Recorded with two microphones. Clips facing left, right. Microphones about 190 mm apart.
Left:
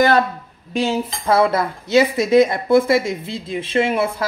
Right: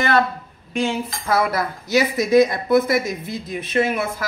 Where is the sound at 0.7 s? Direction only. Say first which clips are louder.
Left 2 dB; 30° left (ahead or behind).